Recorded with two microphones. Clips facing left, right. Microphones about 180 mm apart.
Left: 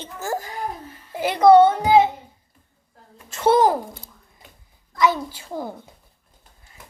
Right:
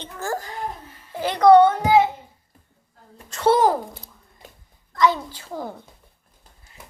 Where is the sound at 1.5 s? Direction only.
25° left (ahead or behind).